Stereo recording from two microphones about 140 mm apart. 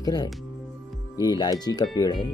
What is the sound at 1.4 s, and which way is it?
Speech, 30° left (ahead or behind).